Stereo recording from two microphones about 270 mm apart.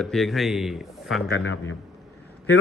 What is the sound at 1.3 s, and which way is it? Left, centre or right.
Speech, left.